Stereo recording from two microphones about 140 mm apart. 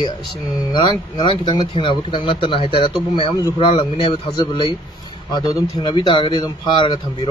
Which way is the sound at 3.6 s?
45° left (ahead or behind).